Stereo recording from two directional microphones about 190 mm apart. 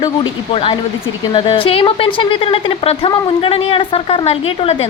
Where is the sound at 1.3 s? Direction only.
25° left (ahead or behind).